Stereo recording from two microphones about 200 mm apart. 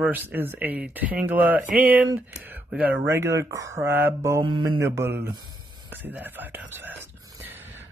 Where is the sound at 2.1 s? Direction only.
10° right (ahead or behind).